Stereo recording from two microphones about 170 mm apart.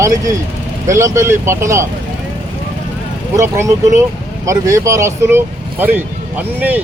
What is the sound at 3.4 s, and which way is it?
Speech, 15° right (ahead or behind).